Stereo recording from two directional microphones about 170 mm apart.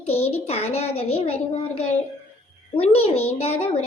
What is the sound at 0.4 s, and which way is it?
Speech, 35° left (ahead or behind).